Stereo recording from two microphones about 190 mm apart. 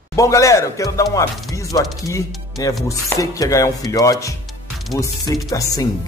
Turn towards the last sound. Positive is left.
turn(degrees=20)  # may be behind; listen again after turning